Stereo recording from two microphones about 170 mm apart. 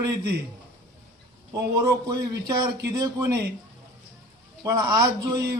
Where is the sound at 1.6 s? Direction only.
20° right (ahead or behind).